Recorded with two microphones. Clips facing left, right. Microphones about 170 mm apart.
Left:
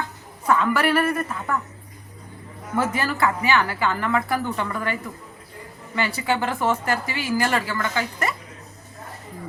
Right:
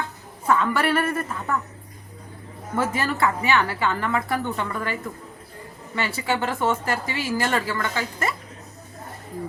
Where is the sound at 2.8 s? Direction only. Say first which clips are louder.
Left 1 dB; 25° right (ahead or behind).